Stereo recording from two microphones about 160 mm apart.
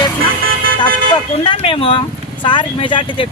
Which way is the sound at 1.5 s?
35° left (ahead or behind).